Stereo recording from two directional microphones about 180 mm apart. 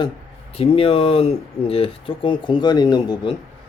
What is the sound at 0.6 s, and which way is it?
Speech, 30° left (ahead or behind).